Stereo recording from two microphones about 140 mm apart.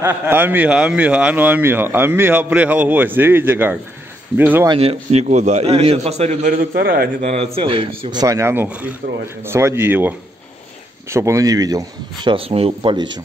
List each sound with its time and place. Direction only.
0.0 s speech: 15° right (ahead or behind)
4.7 s a man's voice: 45° right (ahead or behind); by 7.1 s 90° right
7.2 s a man's voice: 50° right (ahead or behind)
12.9 s a man's voice: 30° right (ahead or behind)